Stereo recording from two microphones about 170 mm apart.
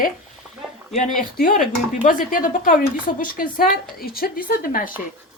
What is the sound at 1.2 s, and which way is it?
Speech, 55° left (ahead or behind).